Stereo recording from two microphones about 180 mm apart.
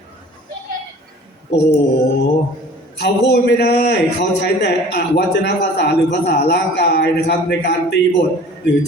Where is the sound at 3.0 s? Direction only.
65° left (ahead or behind).